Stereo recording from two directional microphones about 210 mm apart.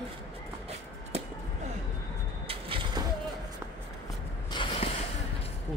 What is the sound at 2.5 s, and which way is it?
Vehicle, 25° right (ahead or behind).